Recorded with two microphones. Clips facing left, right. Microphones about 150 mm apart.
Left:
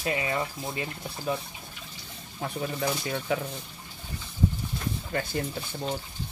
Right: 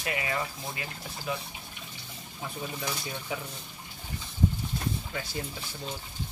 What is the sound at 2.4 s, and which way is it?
Speech, 60° left (ahead or behind).